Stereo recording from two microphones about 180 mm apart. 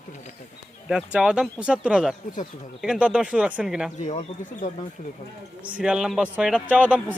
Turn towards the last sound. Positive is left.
turn(degrees=-5)  # may be behind; listen again after turning